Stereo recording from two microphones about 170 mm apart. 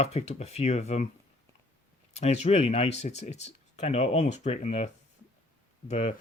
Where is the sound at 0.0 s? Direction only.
40° left (ahead or behind).